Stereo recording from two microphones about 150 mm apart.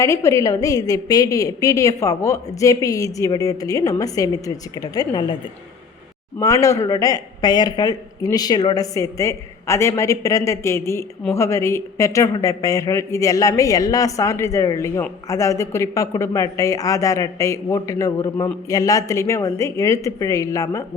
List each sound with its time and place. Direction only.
0.0 s speech: 20° left (ahead or behind)
6.4 s speech: 20° left (ahead or behind)